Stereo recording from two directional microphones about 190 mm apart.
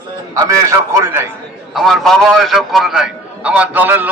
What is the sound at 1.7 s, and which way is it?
A man's voice, centre (ahead or behind).